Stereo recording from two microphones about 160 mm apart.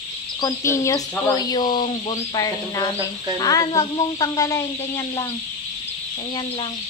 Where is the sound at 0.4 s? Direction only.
20° left (ahead or behind).